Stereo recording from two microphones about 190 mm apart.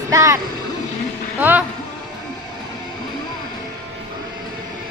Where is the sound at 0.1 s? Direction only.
15° right (ahead or behind).